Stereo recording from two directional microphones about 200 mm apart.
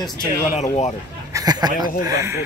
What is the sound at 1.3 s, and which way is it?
A man's voice, 20° right (ahead or behind).